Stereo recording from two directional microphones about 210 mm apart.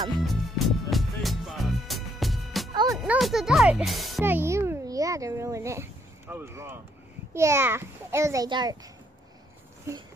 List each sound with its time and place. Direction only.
0.2 s music: centre (ahead or behind)
2.7 s music: 20° right (ahead or behind)
3.0 s music: centre (ahead or behind)
4.2 s a child's voice: 10° right (ahead or behind)